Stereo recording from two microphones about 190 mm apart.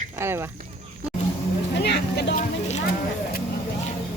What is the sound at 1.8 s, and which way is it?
Vehicle, 60° left (ahead or behind).